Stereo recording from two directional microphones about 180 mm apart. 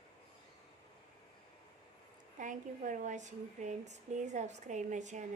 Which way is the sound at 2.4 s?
45° right (ahead or behind).